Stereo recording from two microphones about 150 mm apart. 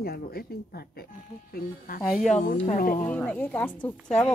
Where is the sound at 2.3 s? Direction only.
55° left (ahead or behind).